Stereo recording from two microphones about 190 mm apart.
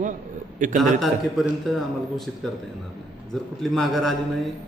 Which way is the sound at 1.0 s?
Centre (ahead or behind).